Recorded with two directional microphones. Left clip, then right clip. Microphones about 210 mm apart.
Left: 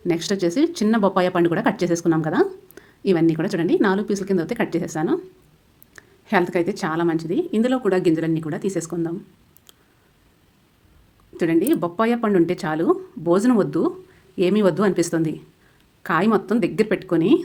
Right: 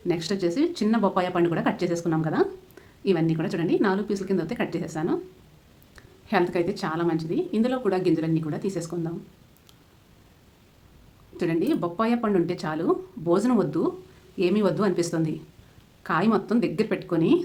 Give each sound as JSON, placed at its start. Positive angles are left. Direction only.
{"t": 0.1, "sound": "speech", "side_deg": 35}
{"t": 11.3, "sound": "speech", "side_deg": 30}